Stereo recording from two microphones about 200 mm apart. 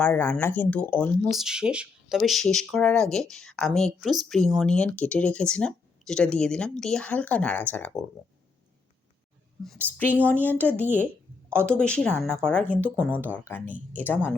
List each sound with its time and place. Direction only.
0.0 s speech: 10° left (ahead or behind)
10.2 s speech: 10° left (ahead or behind)